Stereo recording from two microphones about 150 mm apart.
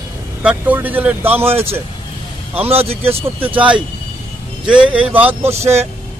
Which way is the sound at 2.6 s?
40° right (ahead or behind).